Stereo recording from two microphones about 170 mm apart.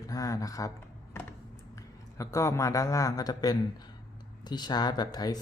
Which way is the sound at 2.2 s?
20° left (ahead or behind).